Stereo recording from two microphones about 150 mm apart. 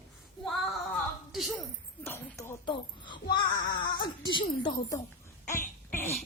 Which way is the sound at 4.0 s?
30° left (ahead or behind).